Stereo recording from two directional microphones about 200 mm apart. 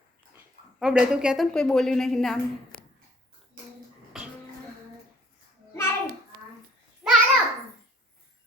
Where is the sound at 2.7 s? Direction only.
45° left (ahead or behind).